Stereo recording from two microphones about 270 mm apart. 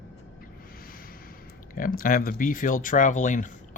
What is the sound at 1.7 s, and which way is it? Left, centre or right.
Speech, left.